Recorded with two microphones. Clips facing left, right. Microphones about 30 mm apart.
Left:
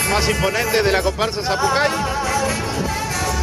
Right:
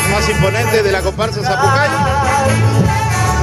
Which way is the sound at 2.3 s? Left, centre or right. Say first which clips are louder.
Right 5 dB; right.